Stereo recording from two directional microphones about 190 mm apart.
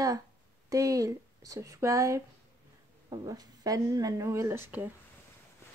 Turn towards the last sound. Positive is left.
turn(degrees=-10)  # may be behind; listen again after turning